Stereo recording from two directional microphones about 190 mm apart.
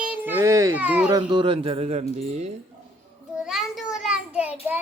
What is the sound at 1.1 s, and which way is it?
Speech, 20° right (ahead or behind).